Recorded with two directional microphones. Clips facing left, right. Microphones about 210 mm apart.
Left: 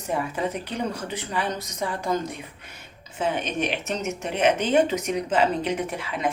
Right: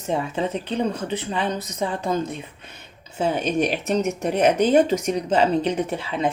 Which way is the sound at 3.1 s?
35° right (ahead or behind).